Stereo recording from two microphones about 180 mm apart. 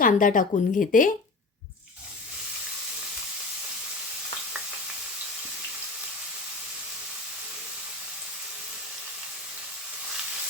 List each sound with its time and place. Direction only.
0.0 s speech: 50° left (ahead or behind)